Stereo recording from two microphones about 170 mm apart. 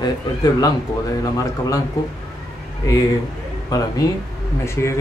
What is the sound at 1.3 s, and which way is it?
Speech, 20° left (ahead or behind).